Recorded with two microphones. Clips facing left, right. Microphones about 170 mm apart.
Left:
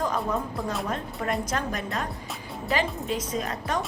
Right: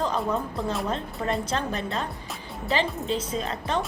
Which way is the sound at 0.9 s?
30° right (ahead or behind).